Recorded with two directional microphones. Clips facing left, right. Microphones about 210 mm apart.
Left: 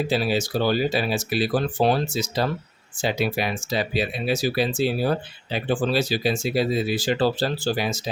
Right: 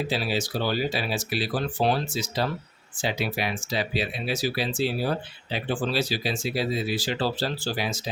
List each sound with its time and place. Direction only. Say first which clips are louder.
0.1 s speech: left 5 dB; 45° left (ahead or behind)